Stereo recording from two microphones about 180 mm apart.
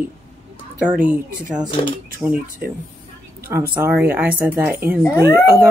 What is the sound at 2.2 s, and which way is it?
Speech, 5° right (ahead or behind).